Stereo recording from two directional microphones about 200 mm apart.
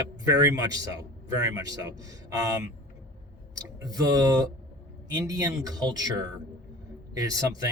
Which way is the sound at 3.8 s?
20° right (ahead or behind).